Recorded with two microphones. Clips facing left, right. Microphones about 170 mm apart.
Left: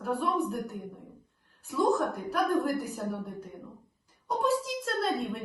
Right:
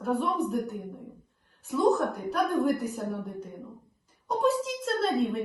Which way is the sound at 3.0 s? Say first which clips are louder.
Right 2 dB; centre (ahead or behind).